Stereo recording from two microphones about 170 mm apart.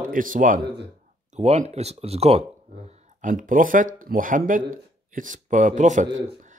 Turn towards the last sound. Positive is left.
turn(degrees=-45)  # may be behind; listen again after turning